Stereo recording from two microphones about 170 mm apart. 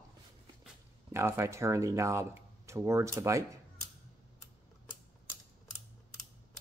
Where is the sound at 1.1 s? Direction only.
15° right (ahead or behind).